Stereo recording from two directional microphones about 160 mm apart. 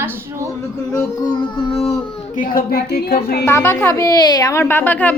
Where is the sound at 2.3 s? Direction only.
60° left (ahead or behind).